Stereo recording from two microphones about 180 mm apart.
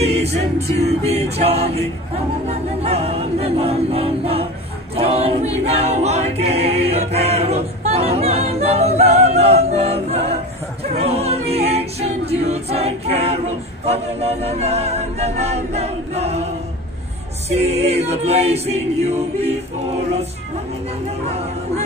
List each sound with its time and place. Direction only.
0.0 s a capella: 35° right (ahead or behind)
17.5 s a capella: 35° right (ahead or behind)